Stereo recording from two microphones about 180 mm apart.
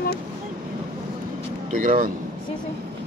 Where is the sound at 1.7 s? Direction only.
50° right (ahead or behind).